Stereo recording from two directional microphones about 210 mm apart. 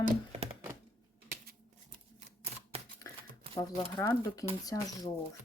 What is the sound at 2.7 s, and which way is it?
Typing, 30° right (ahead or behind).